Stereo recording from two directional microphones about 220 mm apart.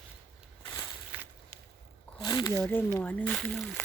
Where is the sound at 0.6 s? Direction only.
15° left (ahead or behind).